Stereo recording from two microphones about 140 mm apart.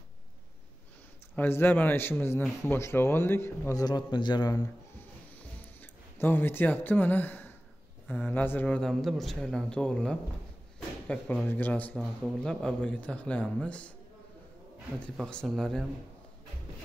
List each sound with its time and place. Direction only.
1.3 s a man's voice: 15° left (ahead or behind)
3.8 s speech: 30° left (ahead or behind)
5.8 s a man's voice: 15° left (ahead or behind)
15.1 s speech: 5° left (ahead or behind)